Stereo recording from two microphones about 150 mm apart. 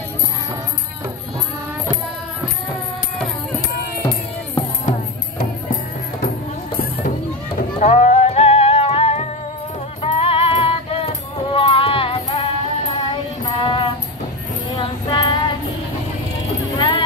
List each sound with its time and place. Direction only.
7.8 s music: 50° left (ahead or behind); by 15.5 s 30° left (ahead or behind)
16.7 s clip-clop: 35° left (ahead or behind)